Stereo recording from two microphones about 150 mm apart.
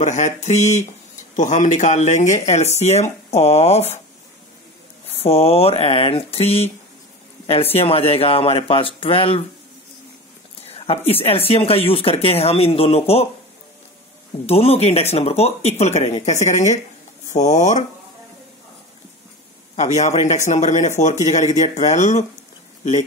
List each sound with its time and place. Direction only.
0.0 s speech: 55° left (ahead or behind)
5.0 s speech: 45° left (ahead or behind)
10.6 s speech: 40° left (ahead or behind)
14.4 s speech: 40° left (ahead or behind)
19.7 s speech: 50° left (ahead or behind)